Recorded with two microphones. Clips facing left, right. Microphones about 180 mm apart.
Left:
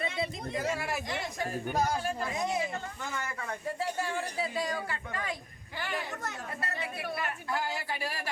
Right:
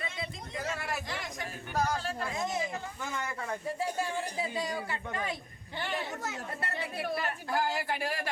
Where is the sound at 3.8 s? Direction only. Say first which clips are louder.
Left 1 dB; 15° right (ahead or behind).